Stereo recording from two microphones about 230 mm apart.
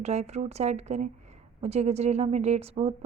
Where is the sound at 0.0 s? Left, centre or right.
Right.